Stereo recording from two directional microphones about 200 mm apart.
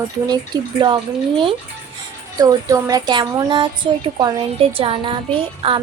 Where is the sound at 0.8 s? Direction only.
25° right (ahead or behind).